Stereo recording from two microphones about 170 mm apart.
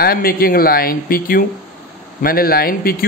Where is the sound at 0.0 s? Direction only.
60° left (ahead or behind).